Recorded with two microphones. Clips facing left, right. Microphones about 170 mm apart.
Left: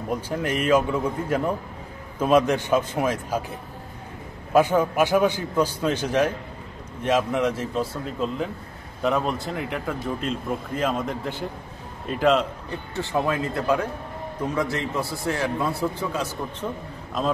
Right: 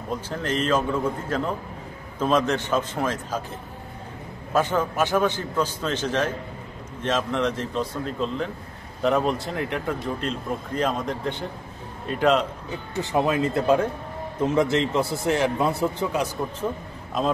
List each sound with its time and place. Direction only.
0.1 s a man's voice: 10° left (ahead or behind)
4.6 s a man's voice: 10° left (ahead or behind)
12.9 s a man's voice: 20° right (ahead or behind)